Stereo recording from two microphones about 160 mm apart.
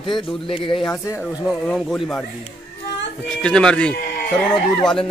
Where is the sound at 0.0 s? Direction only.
30° left (ahead or behind).